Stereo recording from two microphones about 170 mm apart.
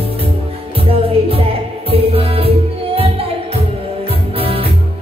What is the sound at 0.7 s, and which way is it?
Music, 35° right (ahead or behind).